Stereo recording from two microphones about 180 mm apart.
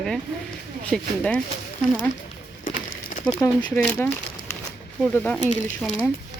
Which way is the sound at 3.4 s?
20° left (ahead or behind).